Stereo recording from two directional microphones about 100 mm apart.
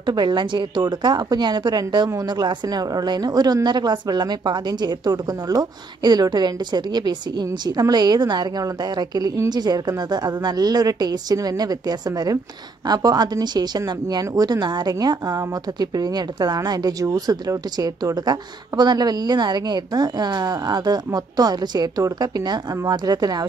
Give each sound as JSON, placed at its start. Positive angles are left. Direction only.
{"t": 0.0, "sound": "a woman's voice", "side_deg": -45}